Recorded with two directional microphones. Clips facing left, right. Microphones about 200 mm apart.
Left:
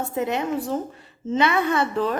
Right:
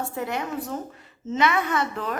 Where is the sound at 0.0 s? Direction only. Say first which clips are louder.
Left 4 dB; 20° left (ahead or behind).